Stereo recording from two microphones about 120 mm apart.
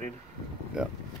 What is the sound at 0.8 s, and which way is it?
Speech, 5° right (ahead or behind).